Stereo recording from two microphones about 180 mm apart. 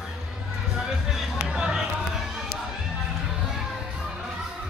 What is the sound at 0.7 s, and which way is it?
Music, centre (ahead or behind).